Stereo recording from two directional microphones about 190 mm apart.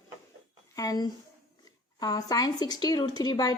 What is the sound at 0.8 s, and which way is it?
A woman's voice, 20° left (ahead or behind).